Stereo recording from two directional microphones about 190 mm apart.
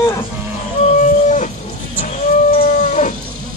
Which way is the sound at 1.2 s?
40° left (ahead or behind).